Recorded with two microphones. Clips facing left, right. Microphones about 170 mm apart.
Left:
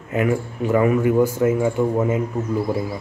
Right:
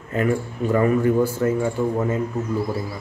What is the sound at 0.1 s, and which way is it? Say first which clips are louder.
Speech: left 1 dB; 10° left (ahead or behind).